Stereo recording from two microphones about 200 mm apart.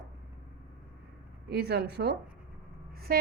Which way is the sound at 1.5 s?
55° right (ahead or behind).